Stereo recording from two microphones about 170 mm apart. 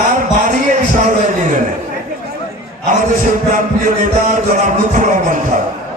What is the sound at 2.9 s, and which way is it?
A man's voice, 50° right (ahead or behind).